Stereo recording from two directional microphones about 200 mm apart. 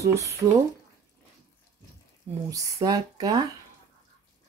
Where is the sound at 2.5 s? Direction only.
15° right (ahead or behind).